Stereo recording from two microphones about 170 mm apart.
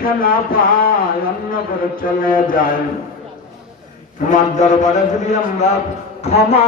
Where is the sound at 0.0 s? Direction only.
60° left (ahead or behind).